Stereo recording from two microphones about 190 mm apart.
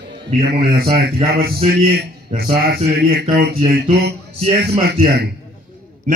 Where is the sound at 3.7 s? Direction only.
60° right (ahead or behind).